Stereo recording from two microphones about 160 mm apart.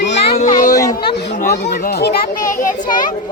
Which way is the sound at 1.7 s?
75° left (ahead or behind).